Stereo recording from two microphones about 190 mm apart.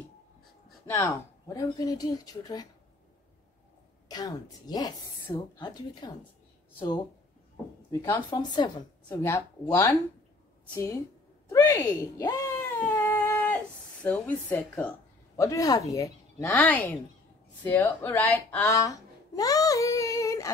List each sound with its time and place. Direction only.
0.8 s speech: 10° left (ahead or behind)
4.1 s speech: 20° left (ahead or behind)
7.9 s a woman's voice: 15° left (ahead or behind)
11.4 s a sound: 15° left (ahead or behind)
14.0 s a woman's voice: 10° left (ahead or behind)
17.6 s babbling: 10° left (ahead or behind)